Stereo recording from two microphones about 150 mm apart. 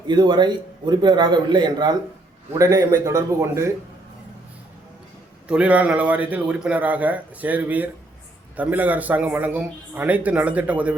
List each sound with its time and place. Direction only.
0.1 s a man's voice: 30° right (ahead or behind)
5.5 s speech: 10° right (ahead or behind)